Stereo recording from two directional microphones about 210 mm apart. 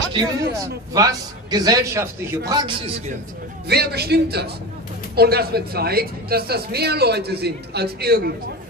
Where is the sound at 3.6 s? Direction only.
50° right (ahead or behind).